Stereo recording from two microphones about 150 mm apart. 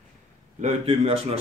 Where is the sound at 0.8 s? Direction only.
35° right (ahead or behind).